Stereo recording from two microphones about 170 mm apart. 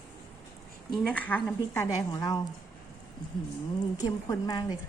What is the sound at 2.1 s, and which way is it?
Speech, 25° left (ahead or behind).